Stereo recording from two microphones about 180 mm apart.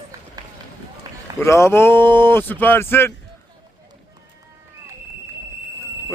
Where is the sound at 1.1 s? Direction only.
20° right (ahead or behind).